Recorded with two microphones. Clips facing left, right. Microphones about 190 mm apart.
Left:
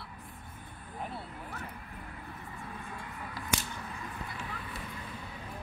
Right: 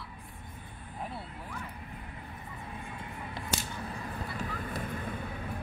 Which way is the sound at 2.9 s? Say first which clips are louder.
Right 1 dB; 25° right (ahead or behind).